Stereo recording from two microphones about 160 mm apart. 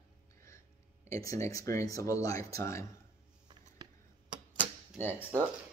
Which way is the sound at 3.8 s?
25° right (ahead or behind).